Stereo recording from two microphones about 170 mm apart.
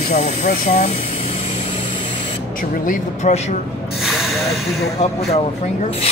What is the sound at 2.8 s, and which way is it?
Speech, 45° left (ahead or behind).